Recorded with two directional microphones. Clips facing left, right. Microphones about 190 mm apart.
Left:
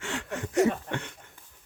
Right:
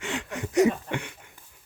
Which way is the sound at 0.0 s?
20° right (ahead or behind).